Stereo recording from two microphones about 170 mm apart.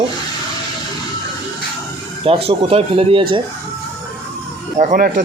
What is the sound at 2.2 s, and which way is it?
Speech, 35° right (ahead or behind).